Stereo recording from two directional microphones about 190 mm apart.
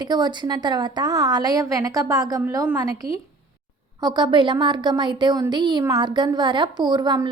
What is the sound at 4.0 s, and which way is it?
A woman's voice, 25° right (ahead or behind).